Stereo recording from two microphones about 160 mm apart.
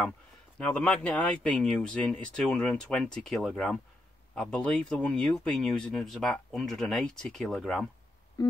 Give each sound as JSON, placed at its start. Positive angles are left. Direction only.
{"t": 0.6, "sound": "speech", "side_deg": 5}
{"t": 8.4, "sound": "busy signal", "side_deg": 25}